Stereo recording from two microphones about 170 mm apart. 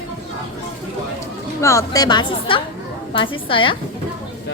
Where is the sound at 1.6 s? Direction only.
15° left (ahead or behind).